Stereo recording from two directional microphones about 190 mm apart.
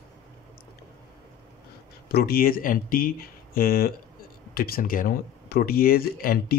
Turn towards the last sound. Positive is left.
turn(degrees=50)  # may be behind; listen again after turning